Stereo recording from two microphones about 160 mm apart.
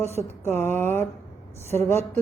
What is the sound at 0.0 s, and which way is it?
Speech, 15° left (ahead or behind).